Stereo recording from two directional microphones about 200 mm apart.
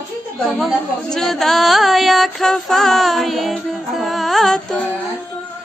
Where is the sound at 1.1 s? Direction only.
Centre (ahead or behind).